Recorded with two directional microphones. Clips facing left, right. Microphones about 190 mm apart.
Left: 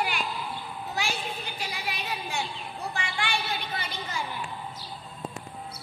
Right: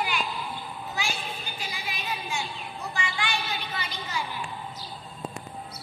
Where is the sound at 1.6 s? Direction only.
65° left (ahead or behind).